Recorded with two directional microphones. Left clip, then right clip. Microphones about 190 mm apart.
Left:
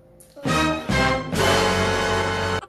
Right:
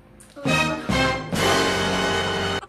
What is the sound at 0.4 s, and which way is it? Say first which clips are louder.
Music: even; centre (ahead or behind).